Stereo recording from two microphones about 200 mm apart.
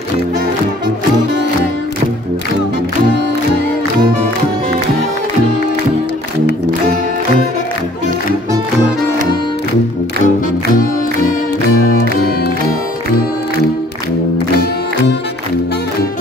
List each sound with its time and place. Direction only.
10.2 s music: 45° left (ahead or behind)